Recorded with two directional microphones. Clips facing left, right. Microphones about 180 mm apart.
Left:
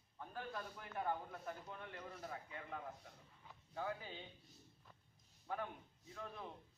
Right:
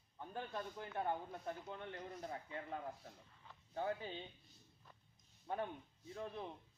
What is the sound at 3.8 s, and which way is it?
Speech, 30° right (ahead or behind).